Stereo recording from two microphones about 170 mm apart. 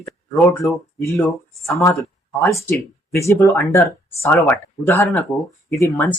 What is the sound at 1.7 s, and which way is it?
Speech, 20° left (ahead or behind).